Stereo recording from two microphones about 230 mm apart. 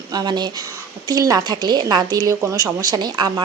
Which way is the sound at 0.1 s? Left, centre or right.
Centre.